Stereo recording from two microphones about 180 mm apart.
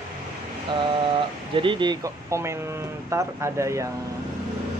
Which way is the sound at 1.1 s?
30° right (ahead or behind).